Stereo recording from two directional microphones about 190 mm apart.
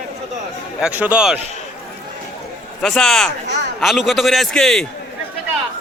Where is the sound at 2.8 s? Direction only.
Centre (ahead or behind).